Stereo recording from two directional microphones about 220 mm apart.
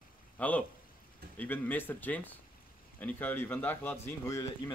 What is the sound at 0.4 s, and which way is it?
A man's voice, 5° left (ahead or behind).